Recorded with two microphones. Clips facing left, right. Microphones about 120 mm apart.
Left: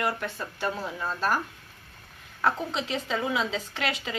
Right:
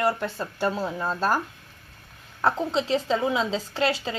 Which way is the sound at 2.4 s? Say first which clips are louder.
Right 4 dB; 30° right (ahead or behind).